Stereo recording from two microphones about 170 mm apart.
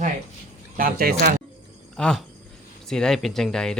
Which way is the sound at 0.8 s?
55° right (ahead or behind).